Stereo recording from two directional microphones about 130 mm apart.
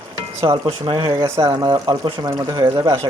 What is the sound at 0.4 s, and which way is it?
Speech, 40° right (ahead or behind).